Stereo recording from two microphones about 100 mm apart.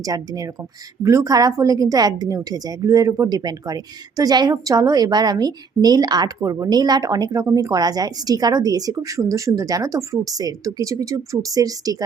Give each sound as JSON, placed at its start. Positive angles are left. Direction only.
{"t": 0.0, "sound": "a woman's voice", "side_deg": -35}